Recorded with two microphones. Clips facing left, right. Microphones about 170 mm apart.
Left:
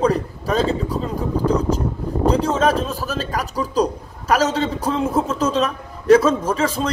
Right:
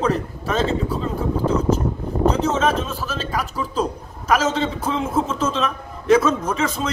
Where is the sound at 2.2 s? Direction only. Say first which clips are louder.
Left 2 dB; 35° left (ahead or behind).